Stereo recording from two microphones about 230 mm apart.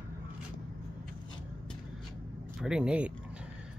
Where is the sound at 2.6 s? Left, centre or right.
Centre.